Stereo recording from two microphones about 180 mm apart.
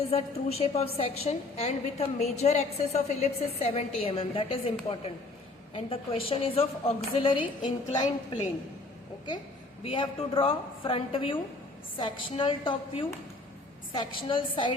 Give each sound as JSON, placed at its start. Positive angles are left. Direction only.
{"t": 0.1, "sound": "a woman's voice", "side_deg": 35}
{"t": 9.8, "sound": "a woman's voice", "side_deg": 30}